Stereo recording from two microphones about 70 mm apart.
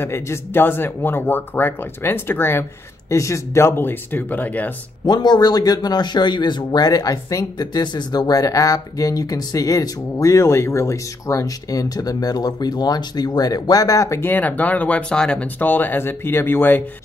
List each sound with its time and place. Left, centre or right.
0.0 s speech: left
3.1 s speech: left
5.0 s speech: left
14.2 s speech: left
15.6 s speech: left